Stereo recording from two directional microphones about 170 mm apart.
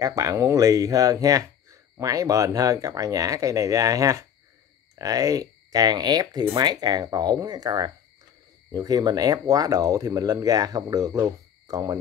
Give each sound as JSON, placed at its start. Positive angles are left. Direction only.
{"t": 0.0, "sound": "speech", "side_deg": -20}